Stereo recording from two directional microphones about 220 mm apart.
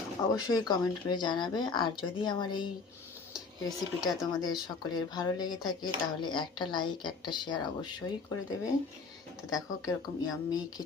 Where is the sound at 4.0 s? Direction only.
20° left (ahead or behind).